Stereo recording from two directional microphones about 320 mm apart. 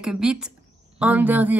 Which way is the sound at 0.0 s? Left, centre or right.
Centre.